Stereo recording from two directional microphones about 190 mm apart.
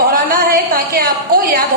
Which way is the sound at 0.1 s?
50° right (ahead or behind).